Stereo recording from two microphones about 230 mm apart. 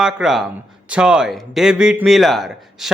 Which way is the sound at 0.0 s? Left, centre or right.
Centre.